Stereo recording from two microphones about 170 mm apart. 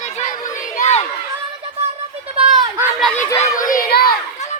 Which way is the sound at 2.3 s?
25° right (ahead or behind).